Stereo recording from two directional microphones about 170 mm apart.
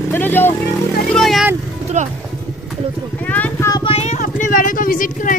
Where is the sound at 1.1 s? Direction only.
Centre (ahead or behind).